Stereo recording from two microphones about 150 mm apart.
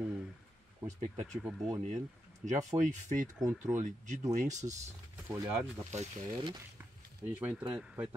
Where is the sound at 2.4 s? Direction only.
50° right (ahead or behind).